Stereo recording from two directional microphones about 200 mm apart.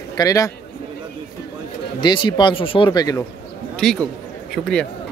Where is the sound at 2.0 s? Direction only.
25° left (ahead or behind).